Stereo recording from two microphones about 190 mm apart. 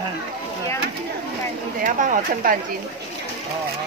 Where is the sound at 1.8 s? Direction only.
45° right (ahead or behind).